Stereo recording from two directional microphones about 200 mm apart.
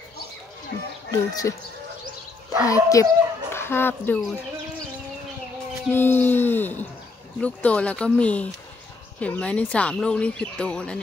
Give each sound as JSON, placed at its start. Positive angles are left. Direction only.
{"t": 1.1, "sound": "speech", "side_deg": 20}
{"t": 2.6, "sound": "speech", "side_deg": 15}
{"t": 5.9, "sound": "speech", "side_deg": 10}